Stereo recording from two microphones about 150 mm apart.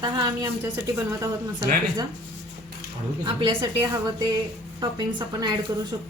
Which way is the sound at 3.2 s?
35° right (ahead or behind).